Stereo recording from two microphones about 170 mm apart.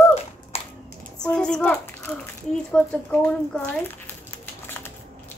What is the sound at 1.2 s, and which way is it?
A woman's voice, 5° left (ahead or behind).